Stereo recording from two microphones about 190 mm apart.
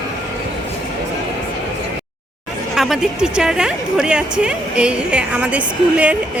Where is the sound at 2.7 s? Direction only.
Centre (ahead or behind).